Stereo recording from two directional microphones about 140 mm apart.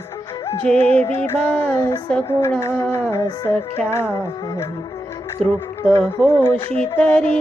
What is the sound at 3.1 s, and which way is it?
Music, 20° left (ahead or behind).